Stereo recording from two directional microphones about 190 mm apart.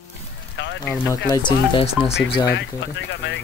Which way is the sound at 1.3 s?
25° left (ahead or behind).